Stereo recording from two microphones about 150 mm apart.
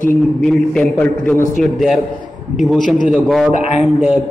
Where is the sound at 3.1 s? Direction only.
5° right (ahead or behind).